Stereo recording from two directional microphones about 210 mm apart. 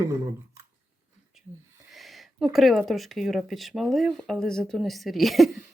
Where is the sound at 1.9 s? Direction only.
Centre (ahead or behind).